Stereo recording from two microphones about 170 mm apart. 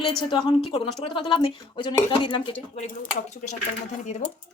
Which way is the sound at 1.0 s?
30° left (ahead or behind).